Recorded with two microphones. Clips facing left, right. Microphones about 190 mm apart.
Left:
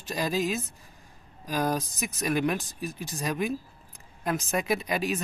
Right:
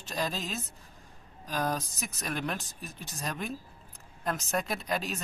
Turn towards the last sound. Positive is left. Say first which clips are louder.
# left 5 dB
turn(degrees=10)  # may be behind; listen again after turning